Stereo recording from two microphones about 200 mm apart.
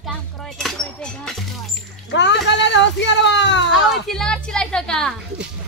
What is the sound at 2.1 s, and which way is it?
Speech, 65° left (ahead or behind).